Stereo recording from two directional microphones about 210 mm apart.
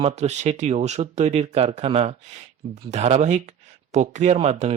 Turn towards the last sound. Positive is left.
turn(degrees=-30)  # may be behind; listen again after turning